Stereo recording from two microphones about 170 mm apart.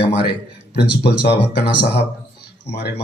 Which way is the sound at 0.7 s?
85° left.